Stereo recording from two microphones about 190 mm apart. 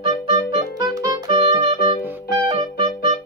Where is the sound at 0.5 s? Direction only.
20° right (ahead or behind).